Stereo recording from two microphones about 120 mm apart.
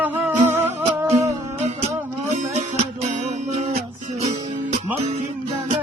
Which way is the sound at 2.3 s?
85° right.